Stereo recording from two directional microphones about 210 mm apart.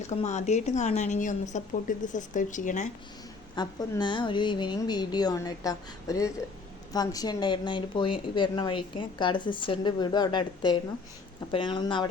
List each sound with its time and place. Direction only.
0.1 s a woman's voice: 35° left (ahead or behind)
3.5 s speech: 20° left (ahead or behind)